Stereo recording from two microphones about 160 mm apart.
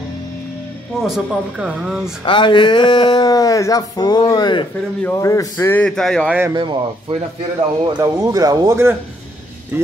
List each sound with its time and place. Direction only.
1.0 s speech: 5° right (ahead or behind)
2.2 s speech: 30° left (ahead or behind)
5.8 s speech: 5° left (ahead or behind)
6.5 s speech: 30° right (ahead or behind)